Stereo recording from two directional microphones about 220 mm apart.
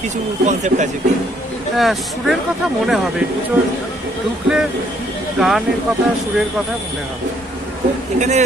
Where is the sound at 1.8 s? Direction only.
Centre (ahead or behind).